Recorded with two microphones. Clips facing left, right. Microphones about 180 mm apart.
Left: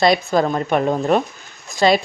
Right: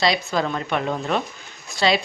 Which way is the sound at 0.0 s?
50° left (ahead or behind).